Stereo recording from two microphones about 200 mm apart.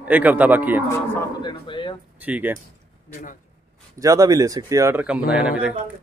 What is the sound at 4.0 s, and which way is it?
Speech, 15° right (ahead or behind).